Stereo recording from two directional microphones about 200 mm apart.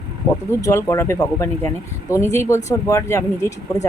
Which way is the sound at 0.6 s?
15° left (ahead or behind).